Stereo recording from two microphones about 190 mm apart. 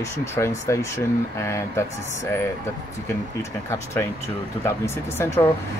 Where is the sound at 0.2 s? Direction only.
15° left (ahead or behind).